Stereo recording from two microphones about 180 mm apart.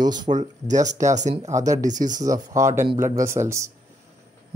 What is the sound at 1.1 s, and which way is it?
Speech, 40° right (ahead or behind).